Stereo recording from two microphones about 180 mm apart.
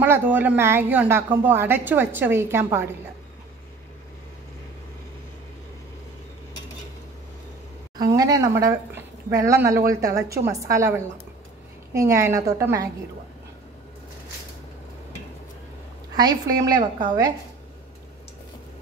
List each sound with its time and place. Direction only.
0.0 s speech: 10° right (ahead or behind)
8.0 s speech: 20° right (ahead or behind)
16.2 s a woman's voice: 20° right (ahead or behind)